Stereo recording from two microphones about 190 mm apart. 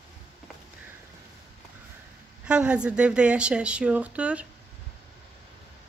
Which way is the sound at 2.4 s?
5° right (ahead or behind).